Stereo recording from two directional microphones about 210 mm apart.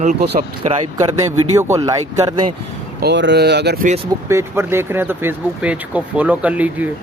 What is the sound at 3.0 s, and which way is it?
Speech, 55° right (ahead or behind).